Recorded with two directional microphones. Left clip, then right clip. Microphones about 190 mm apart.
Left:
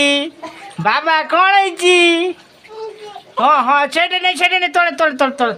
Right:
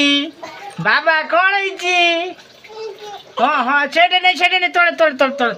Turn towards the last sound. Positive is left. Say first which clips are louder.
# even
turn(degrees=15)  # may be behind; listen again after turning